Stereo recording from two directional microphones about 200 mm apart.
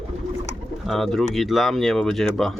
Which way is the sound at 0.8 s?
Centre (ahead or behind).